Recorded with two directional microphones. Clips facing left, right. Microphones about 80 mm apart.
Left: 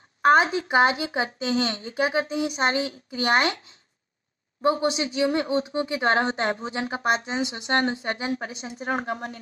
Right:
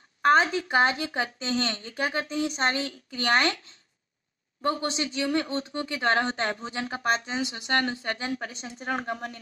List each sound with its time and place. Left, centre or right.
0.2 s speech: centre
4.6 s speech: centre
8.5 s speech: centre